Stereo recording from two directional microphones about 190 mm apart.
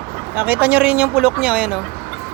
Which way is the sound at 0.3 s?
10° right (ahead or behind).